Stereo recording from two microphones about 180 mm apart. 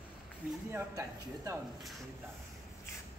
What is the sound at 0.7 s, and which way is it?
Speech, 15° right (ahead or behind).